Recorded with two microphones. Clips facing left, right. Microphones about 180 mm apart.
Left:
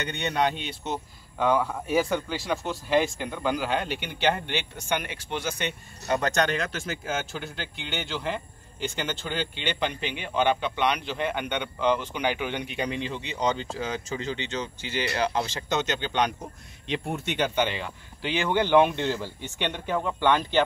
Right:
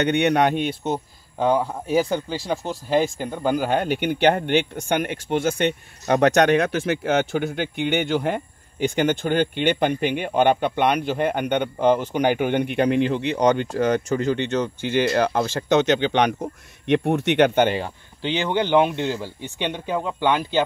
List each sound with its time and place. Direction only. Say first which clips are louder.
0.0 s speech: right 8 dB; 65° right (ahead or behind)
1.4 s speech: right 3 dB; 35° right (ahead or behind); by 17.8 s 50° right (ahead or behind)
17.8 s speech: right 5 dB; 25° right (ahead or behind)